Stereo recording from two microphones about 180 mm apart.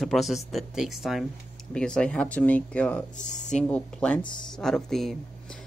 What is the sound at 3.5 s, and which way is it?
Speech, 5° left (ahead or behind).